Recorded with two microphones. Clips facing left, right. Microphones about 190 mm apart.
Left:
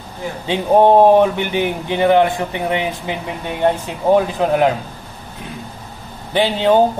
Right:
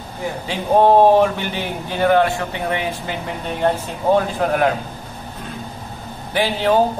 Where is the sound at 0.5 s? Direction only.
15° left (ahead or behind).